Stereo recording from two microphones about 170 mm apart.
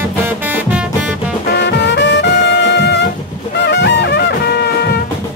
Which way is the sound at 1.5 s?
90° left.